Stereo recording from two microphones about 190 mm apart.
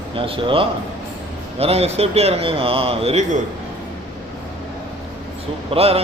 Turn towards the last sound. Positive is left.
turn(degrees=-30)  # may be behind; listen again after turning